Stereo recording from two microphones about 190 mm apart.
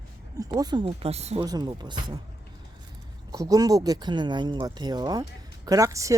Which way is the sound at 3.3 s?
20° right (ahead or behind).